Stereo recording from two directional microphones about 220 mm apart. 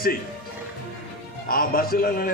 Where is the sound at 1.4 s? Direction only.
40° left (ahead or behind).